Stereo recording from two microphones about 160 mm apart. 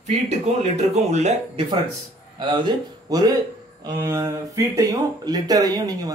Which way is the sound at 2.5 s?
25° right (ahead or behind).